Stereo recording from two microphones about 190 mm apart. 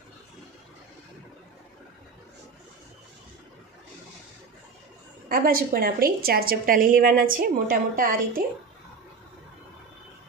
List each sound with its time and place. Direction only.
5.3 s a woman's voice: 50° right (ahead or behind)